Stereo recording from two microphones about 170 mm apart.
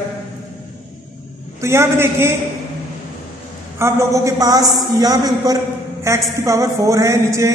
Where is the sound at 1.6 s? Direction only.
15° right (ahead or behind).